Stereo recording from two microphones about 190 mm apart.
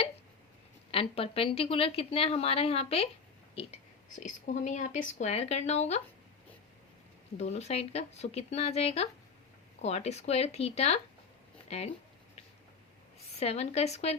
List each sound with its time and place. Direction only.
0.9 s a woman's voice: 30° left (ahead or behind)
7.3 s a woman's voice: 35° left (ahead or behind)
13.4 s a woman's voice: 35° left (ahead or behind)